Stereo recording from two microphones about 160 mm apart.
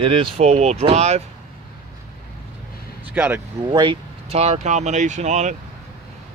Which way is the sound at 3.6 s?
30° right (ahead or behind).